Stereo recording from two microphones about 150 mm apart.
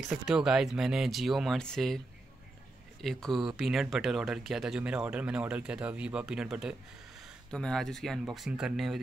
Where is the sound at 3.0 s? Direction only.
Centre (ahead or behind).